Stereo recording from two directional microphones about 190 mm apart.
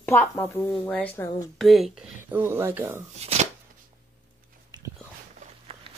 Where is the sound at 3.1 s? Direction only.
35° right (ahead or behind).